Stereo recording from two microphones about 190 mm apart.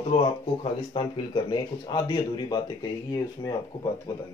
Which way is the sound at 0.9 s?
25° left (ahead or behind).